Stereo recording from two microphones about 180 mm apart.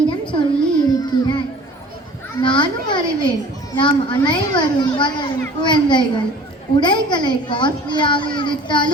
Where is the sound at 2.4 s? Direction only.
25° left (ahead or behind).